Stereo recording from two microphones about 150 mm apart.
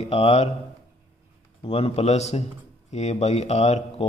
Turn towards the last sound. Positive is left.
turn(degrees=50)  # may be behind; listen again after turning